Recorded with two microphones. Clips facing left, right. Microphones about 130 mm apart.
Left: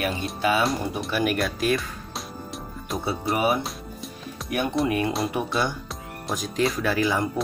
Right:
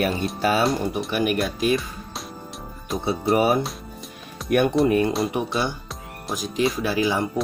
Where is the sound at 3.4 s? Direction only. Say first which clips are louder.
Right 3 dB; 40° right (ahead or behind).